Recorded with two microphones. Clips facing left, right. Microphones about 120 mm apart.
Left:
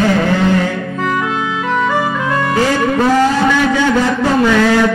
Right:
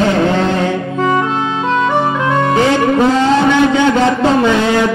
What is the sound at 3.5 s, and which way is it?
A man's voice, 20° right (ahead or behind).